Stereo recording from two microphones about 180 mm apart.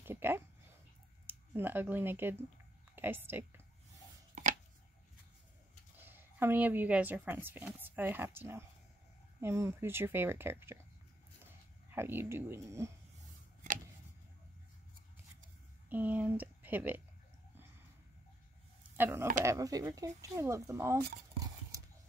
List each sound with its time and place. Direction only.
0.0 s speech: 10° right (ahead or behind)
4.4 s a sound: 45° right (ahead or behind)
5.9 s a woman's voice: 10° right (ahead or behind)
11.9 s speech: 10° right (ahead or behind)
15.9 s speech: 10° right (ahead or behind)
18.9 s speech: 10° right (ahead or behind)